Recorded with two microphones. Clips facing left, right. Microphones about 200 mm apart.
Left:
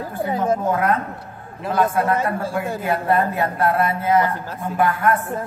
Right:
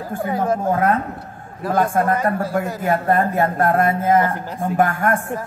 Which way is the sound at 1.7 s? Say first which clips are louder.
Right 1 dB; 45° right (ahead or behind).